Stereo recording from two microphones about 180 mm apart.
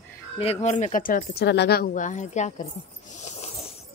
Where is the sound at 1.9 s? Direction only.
45° left (ahead or behind).